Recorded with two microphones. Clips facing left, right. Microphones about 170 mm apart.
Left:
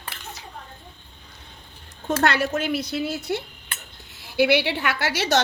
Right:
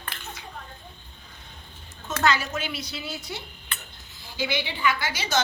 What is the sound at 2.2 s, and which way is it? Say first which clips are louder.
Speech: left 2 dB; 65° left (ahead or behind).